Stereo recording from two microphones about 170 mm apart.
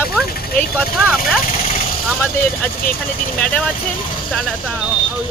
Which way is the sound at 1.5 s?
40° left (ahead or behind).